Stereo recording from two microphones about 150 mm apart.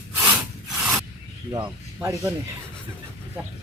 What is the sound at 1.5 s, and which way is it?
Speech, 25° right (ahead or behind).